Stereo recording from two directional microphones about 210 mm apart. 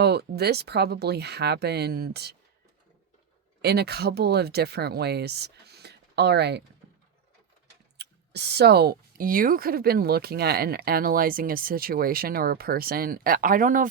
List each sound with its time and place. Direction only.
0.0 s speech: 50° right (ahead or behind)
3.6 s speech: 50° right (ahead or behind)
7.9 s speech: 50° right (ahead or behind)